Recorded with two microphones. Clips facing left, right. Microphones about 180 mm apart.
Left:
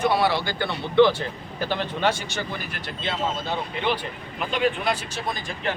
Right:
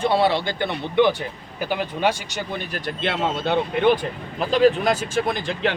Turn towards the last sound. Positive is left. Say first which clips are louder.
# right 8 dB
turn(degrees=-65)  # may be behind; listen again after turning